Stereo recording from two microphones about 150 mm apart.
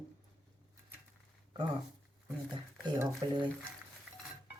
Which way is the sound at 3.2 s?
30° right (ahead or behind).